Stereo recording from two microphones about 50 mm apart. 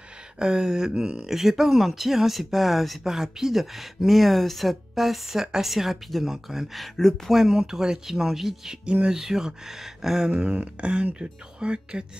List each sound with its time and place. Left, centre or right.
0.4 s speech: centre
8.8 s speech: centre
10.4 s speech: right